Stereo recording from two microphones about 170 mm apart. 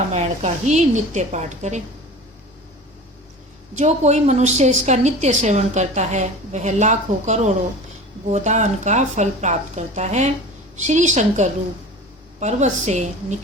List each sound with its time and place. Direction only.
0.1 s a woman's voice: 40° right (ahead or behind)
3.8 s a woman's voice: 40° right (ahead or behind)